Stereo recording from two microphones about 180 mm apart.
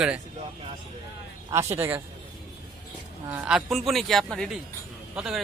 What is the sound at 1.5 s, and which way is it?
Speech, 15° right (ahead or behind).